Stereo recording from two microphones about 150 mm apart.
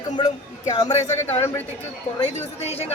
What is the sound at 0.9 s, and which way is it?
Speech, 50° left (ahead or behind).